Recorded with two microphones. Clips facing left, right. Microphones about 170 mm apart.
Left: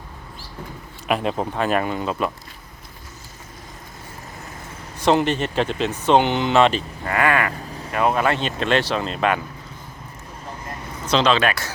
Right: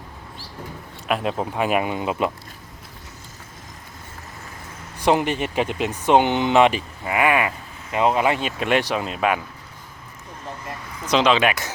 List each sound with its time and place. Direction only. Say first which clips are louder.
1.0 s speech: left 1 dB; centre (ahead or behind)
1.5 s speech: right 1 dB; 10° right (ahead or behind)
4.9 s speech: left 1 dB; 15° right (ahead or behind)
11.1 s speech: even; 15° right (ahead or behind)